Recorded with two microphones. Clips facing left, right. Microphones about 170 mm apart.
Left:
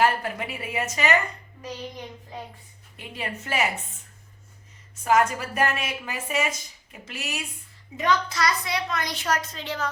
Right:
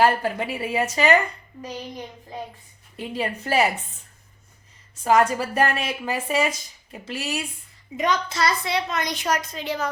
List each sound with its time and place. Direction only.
0.0 s speech: 30° right (ahead or behind)
3.0 s speech: 35° right (ahead or behind)
5.0 s speech: 30° right (ahead or behind)
7.9 s a woman's voice: 20° right (ahead or behind)